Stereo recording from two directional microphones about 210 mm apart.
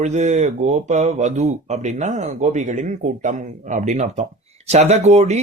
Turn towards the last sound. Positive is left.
turn(degrees=-30)  # may be behind; listen again after turning